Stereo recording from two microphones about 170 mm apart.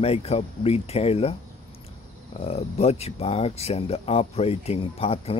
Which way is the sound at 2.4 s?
40° left (ahead or behind).